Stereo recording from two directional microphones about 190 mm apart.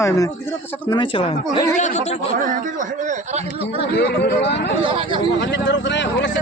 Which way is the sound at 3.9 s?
60° left (ahead or behind).